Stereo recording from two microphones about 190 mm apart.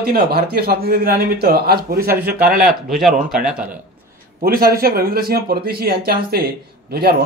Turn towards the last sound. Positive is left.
turn(degrees=-55)  # may be behind; listen again after turning